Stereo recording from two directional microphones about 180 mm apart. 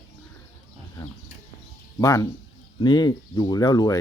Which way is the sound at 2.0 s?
20° left (ahead or behind).